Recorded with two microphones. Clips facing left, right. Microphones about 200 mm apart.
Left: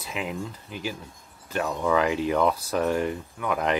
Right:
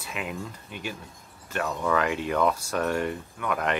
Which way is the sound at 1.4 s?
10° left (ahead or behind).